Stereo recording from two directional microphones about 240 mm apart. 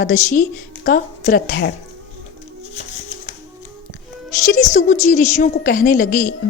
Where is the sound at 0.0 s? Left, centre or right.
Left.